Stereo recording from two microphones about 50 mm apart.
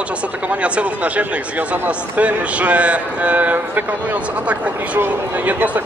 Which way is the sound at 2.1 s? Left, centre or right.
Right.